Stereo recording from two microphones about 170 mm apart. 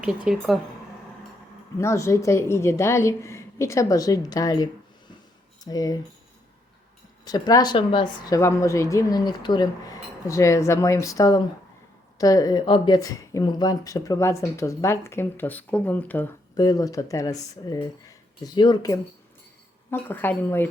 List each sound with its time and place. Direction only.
0.0 s a woman's voice: 5° right (ahead or behind)
1.8 s a woman's voice: 15° left (ahead or behind)
7.3 s a woman's voice: 25° left (ahead or behind)
16.6 s a woman's voice: 20° left (ahead or behind)
19.9 s a woman's voice: 10° left (ahead or behind)